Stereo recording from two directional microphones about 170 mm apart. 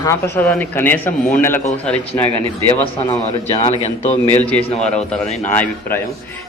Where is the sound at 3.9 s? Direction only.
40° left (ahead or behind).